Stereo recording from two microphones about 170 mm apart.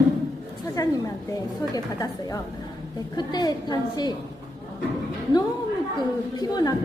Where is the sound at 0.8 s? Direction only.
20° left (ahead or behind).